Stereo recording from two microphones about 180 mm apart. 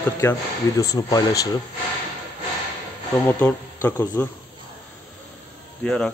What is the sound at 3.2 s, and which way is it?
Speech, 10° left (ahead or behind).